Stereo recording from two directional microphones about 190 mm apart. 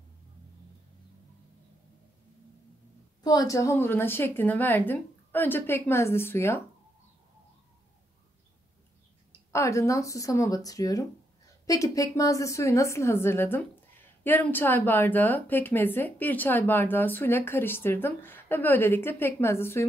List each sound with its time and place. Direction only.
3.3 s speech: 20° left (ahead or behind)
9.5 s speech: 15° left (ahead or behind)